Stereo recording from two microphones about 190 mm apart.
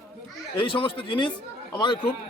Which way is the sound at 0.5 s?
25° left (ahead or behind).